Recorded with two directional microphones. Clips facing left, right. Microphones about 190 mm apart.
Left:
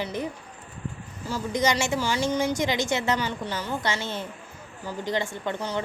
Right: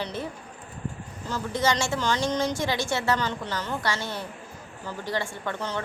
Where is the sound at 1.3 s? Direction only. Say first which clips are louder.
Left 1 dB; 15° left (ahead or behind).